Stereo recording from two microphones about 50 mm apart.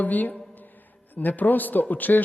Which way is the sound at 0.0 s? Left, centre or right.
Left.